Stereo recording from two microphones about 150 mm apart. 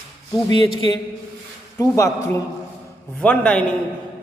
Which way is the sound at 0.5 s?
30° left (ahead or behind).